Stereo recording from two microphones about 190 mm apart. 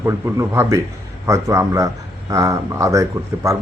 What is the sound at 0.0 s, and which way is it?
Speech, 15° right (ahead or behind).